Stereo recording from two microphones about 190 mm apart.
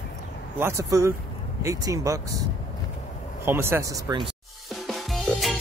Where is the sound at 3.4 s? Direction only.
10° right (ahead or behind).